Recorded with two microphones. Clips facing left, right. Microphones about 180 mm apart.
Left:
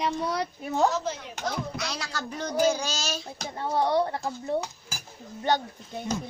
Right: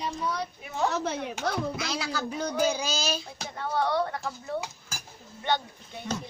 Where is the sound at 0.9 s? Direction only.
60° right (ahead or behind).